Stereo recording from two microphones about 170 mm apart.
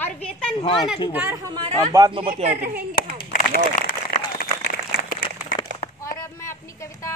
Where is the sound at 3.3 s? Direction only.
55° left (ahead or behind).